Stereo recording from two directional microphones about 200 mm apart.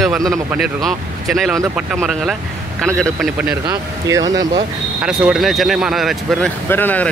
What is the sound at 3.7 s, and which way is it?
Speech, 15° right (ahead or behind).